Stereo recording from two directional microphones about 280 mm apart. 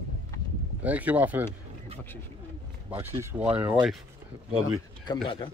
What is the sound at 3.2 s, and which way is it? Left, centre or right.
Speech, centre.